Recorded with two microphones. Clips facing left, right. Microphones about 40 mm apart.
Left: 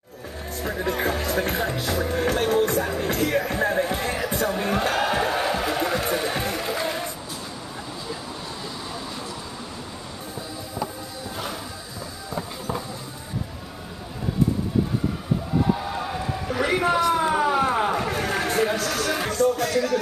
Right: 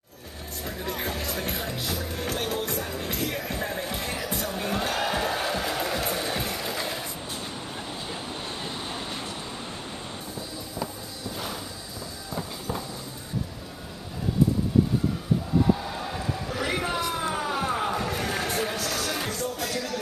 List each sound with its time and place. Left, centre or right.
0.7 s music: left
12.4 s music: centre
15.7 s a sound: centre
18.9 s music: centre